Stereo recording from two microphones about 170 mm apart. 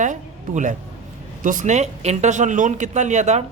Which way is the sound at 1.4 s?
50° right (ahead or behind).